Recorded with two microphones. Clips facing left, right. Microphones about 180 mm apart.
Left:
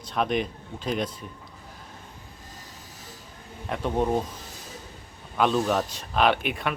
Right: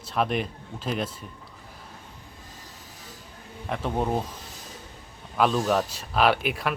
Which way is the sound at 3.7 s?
5° right (ahead or behind).